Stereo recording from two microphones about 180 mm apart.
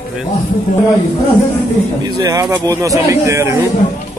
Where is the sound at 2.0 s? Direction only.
20° right (ahead or behind).